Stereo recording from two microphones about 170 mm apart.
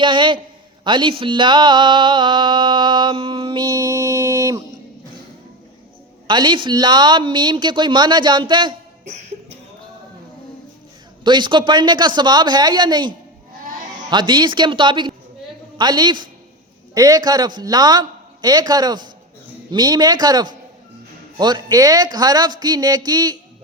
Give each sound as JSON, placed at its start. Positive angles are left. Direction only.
{"t": 0.0, "sound": "mantra", "side_deg": -30}
{"t": 6.2, "sound": "mantra", "side_deg": -25}
{"t": 11.2, "sound": "mantra", "side_deg": -25}